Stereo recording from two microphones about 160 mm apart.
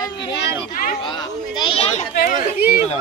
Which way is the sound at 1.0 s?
30° left (ahead or behind).